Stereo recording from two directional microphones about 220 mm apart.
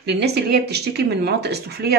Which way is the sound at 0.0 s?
50° right (ahead or behind).